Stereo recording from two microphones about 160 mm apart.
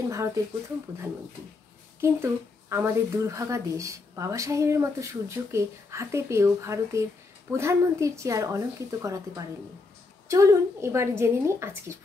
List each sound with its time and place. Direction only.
0.1 s speech: 20° right (ahead or behind)
2.0 s a woman's voice: 15° right (ahead or behind)